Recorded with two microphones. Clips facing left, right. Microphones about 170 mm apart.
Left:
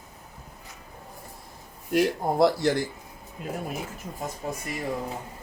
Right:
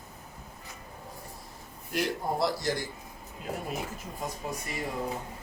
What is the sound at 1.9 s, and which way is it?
Speech, 50° left (ahead or behind).